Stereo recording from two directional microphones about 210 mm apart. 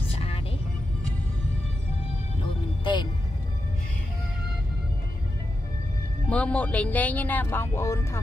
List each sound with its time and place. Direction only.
0.1 s music: 30° left (ahead or behind)
2.8 s music: 20° left (ahead or behind)
6.2 s speech: 5° left (ahead or behind)